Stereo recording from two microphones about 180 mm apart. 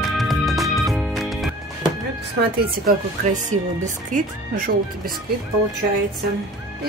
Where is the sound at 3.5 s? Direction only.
45° right (ahead or behind).